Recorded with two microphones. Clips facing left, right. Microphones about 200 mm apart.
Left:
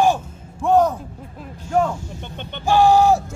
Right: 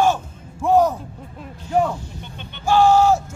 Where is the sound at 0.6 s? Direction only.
5° right (ahead or behind).